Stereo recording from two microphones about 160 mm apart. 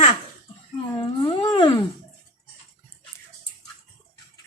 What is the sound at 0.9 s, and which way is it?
Cat, 35° left (ahead or behind).